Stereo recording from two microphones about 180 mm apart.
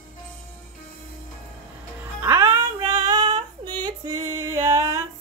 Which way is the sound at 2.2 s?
15° right (ahead or behind).